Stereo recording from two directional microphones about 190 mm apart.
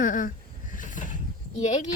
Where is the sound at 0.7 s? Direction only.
45° left (ahead or behind).